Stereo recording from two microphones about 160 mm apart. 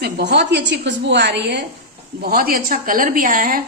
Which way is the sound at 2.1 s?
65° right (ahead or behind).